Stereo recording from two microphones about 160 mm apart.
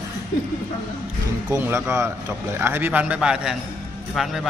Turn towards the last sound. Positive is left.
turn(degrees=0)  # may be behind; listen again after turning